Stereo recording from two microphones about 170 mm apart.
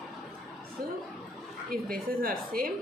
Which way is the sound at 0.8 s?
60° right (ahead or behind).